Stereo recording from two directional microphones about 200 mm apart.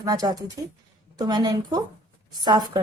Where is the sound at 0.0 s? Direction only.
20° right (ahead or behind).